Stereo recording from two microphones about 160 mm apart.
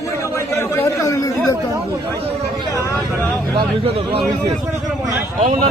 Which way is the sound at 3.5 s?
30° right (ahead or behind).